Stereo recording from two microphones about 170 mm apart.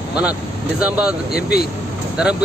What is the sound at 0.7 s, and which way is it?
Speech, 5° right (ahead or behind).